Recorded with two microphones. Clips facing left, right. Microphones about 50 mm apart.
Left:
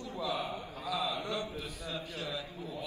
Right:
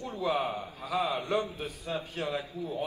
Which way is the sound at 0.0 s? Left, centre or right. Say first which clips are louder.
Right 6 dB; right.